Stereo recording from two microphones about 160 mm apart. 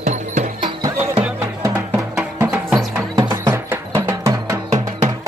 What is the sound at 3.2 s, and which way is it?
Music, 25° right (ahead or behind).